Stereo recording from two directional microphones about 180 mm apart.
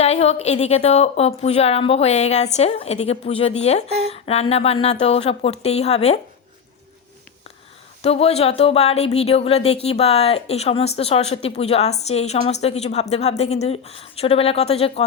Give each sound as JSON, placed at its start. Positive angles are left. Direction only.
{"t": 0.0, "sound": "a woman's voice", "side_deg": 35}
{"t": 3.8, "sound": "speech", "side_deg": -35}
{"t": 4.1, "sound": "a woman's voice", "side_deg": 35}
{"t": 8.0, "sound": "a woman's voice", "side_deg": 35}